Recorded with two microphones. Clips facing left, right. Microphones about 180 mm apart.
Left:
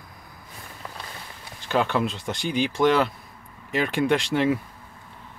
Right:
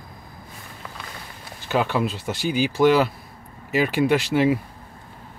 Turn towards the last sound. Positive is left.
turn(degrees=-5)  # may be behind; listen again after turning